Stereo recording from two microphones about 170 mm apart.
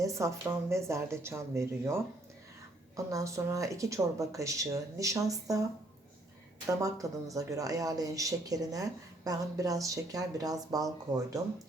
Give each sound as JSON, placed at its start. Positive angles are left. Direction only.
{"t": 0.0, "sound": "speech", "side_deg": -20}
{"t": 6.8, "sound": "speech", "side_deg": -20}